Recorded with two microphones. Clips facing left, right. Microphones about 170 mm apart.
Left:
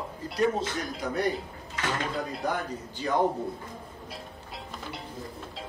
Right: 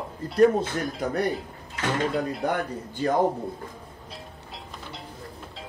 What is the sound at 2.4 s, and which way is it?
Speech, 55° right (ahead or behind).